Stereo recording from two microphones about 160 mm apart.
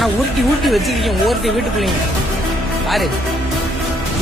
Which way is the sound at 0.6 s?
Centre (ahead or behind).